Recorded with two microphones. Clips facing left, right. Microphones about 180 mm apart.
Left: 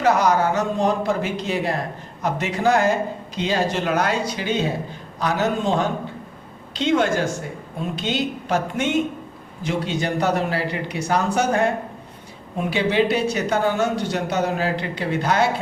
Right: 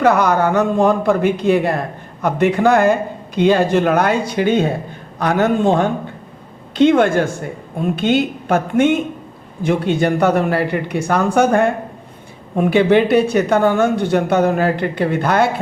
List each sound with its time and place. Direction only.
0.0 s speech: 55° right (ahead or behind)